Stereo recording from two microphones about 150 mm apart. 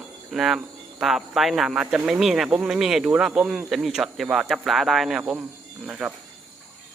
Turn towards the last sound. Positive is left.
turn(degrees=-5)  # may be behind; listen again after turning